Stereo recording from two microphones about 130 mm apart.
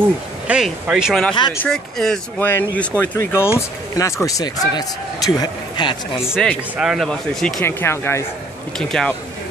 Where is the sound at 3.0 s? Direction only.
20° left (ahead or behind); by 5.9 s 35° left (ahead or behind).